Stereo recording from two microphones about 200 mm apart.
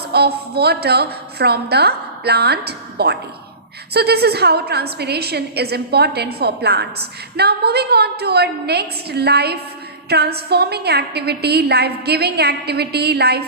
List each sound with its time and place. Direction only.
0.0 s a woman's voice: 55° right (ahead or behind)